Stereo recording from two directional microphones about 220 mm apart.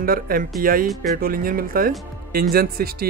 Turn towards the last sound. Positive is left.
turn(degrees=-45)  # may be behind; listen again after turning